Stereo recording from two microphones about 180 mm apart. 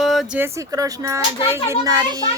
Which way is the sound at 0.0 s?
Centre (ahead or behind).